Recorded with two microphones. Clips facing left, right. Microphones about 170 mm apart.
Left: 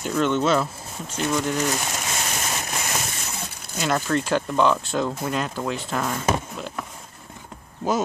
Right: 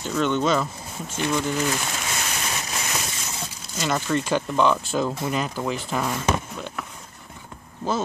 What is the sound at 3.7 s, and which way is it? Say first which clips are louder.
Speech: left 1 dB; centre (ahead or behind).